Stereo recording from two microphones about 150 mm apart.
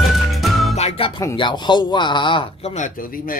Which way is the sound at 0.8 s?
40° left (ahead or behind).